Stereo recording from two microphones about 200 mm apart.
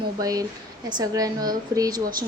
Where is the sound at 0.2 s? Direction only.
15° right (ahead or behind).